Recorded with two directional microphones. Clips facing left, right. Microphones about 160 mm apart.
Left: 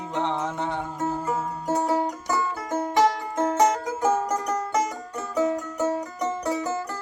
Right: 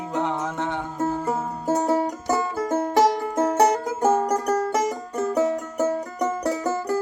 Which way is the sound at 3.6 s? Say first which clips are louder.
Right 2 dB; 35° right (ahead or behind).